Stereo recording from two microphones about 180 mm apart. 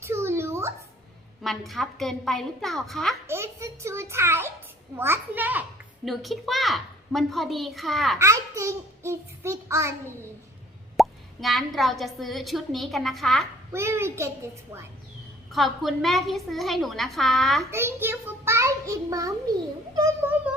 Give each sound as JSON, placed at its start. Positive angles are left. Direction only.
{"t": 0.0, "sound": "a sound", "side_deg": -15}
{"t": 1.4, "sound": "speech", "side_deg": 0}
{"t": 3.2, "sound": "a child's voice", "side_deg": -15}
{"t": 6.1, "sound": "speech", "side_deg": 0}
{"t": 8.2, "sound": "a child's voice", "side_deg": -15}
{"t": 10.9, "sound": "speech", "side_deg": 0}
{"t": 13.7, "sound": "a child's voice", "side_deg": -15}
{"t": 15.5, "sound": "speech", "side_deg": 0}
{"t": 17.7, "sound": "a child's voice", "side_deg": -15}
{"t": 20.0, "sound": "child singing", "side_deg": -10}